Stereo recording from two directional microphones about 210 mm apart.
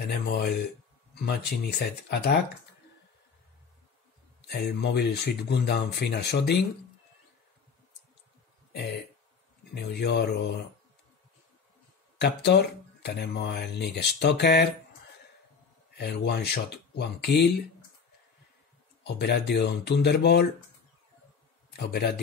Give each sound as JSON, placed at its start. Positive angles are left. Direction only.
{"t": 0.0, "sound": "speech", "side_deg": 50}
{"t": 4.5, "sound": "speech", "side_deg": 50}
{"t": 9.8, "sound": "speech", "side_deg": 50}
{"t": 12.2, "sound": "speech", "side_deg": 55}
{"t": 16.0, "sound": "speech", "side_deg": 50}
{"t": 19.0, "sound": "speech", "side_deg": 50}
{"t": 21.6, "sound": "a man's voice", "side_deg": 50}